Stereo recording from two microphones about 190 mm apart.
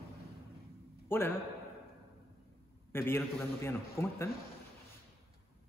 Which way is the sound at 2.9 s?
10° left (ahead or behind).